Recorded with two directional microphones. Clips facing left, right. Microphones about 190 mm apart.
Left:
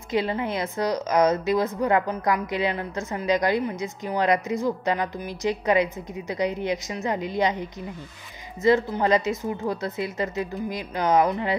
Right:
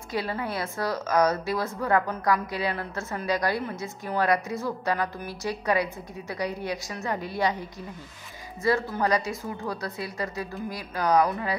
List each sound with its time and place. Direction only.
0.1 s a woman's voice: 20° left (ahead or behind)
8.6 s a woman's voice: 20° left (ahead or behind)